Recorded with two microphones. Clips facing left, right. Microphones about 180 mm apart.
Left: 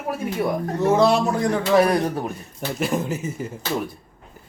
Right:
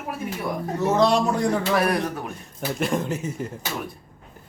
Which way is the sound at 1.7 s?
25° left (ahead or behind).